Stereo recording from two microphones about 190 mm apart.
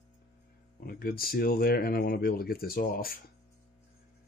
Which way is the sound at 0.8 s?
55° left (ahead or behind).